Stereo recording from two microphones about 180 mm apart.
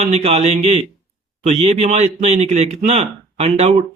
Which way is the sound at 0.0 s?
35° right (ahead or behind).